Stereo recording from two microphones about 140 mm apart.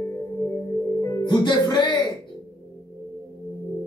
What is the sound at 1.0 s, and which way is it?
Music, 30° left (ahead or behind).